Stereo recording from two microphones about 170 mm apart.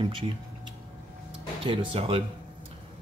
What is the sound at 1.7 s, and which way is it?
Speech, 35° right (ahead or behind).